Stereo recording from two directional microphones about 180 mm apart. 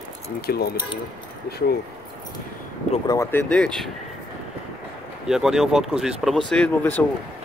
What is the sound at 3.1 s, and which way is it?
Speech, 15° left (ahead or behind).